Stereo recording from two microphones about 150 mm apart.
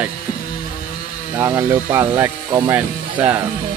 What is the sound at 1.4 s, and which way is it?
Speech, 15° right (ahead or behind).